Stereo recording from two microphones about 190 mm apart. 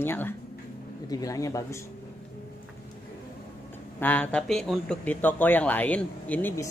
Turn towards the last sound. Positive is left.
turn(degrees=10)  # may be behind; listen again after turning